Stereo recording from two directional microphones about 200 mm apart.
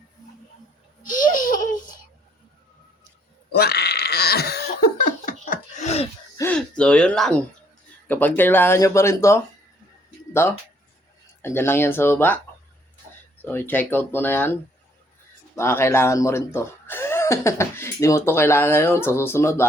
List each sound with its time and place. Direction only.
1.0 s laughter: 40° left (ahead or behind)
3.5 s a sound: 50° left (ahead or behind)
4.8 s laughter: 40° left (ahead or behind)
6.3 s a sound: 10° left (ahead or behind)
8.0 s speech: 10° left (ahead or behind)
10.4 s speech: 15° left (ahead or behind)
13.4 s speech: 10° left (ahead or behind)
15.5 s speech: 15° left (ahead or behind)